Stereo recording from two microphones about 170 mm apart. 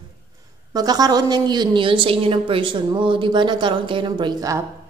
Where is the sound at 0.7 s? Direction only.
20° right (ahead or behind).